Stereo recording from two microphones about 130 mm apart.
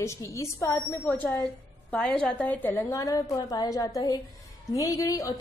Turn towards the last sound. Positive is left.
turn(degrees=25)  # may be behind; listen again after turning